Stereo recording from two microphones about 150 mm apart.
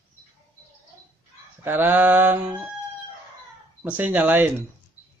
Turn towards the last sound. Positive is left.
turn(degrees=-10)  # may be behind; listen again after turning